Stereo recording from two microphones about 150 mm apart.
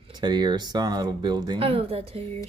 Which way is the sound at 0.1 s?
30° right (ahead or behind).